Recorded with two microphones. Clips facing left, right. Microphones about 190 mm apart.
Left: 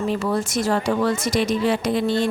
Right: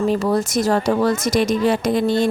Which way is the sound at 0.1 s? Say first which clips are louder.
Right 4 dB; 40° right (ahead or behind).